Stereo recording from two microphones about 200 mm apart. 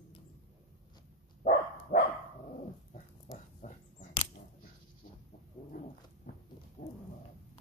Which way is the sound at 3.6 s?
35° left (ahead or behind).